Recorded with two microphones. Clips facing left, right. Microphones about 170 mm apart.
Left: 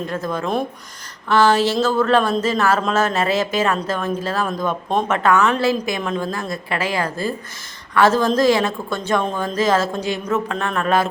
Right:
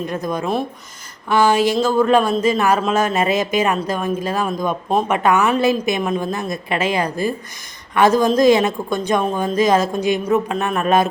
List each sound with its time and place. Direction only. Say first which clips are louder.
0.1 s a woman's voice: even; 15° right (ahead or behind)